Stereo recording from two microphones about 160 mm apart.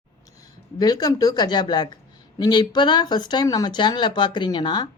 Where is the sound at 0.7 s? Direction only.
25° left (ahead or behind).